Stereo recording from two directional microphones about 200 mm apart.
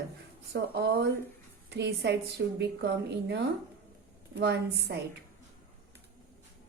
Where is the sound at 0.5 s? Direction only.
55° right (ahead or behind).